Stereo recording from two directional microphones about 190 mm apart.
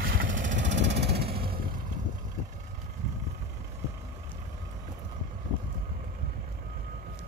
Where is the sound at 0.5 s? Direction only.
70° right (ahead or behind).